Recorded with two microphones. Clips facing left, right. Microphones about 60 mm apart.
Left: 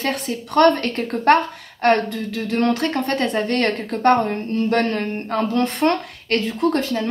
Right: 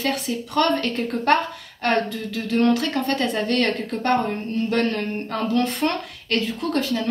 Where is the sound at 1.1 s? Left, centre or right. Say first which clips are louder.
Left 5 dB; left.